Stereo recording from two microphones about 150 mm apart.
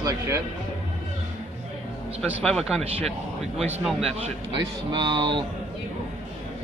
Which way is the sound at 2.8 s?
40° right (ahead or behind).